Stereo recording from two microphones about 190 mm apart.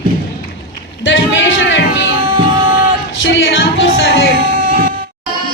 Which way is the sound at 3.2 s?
80° left.